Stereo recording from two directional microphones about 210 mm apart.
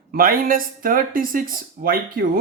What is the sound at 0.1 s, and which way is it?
Speech, 40° right (ahead or behind).